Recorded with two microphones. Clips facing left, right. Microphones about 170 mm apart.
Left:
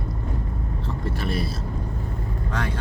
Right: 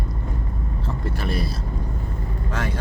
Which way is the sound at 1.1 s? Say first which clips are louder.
Even; centre (ahead or behind).